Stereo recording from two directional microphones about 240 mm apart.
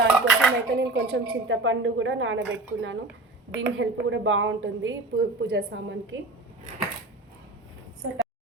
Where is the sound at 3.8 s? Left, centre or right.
Right.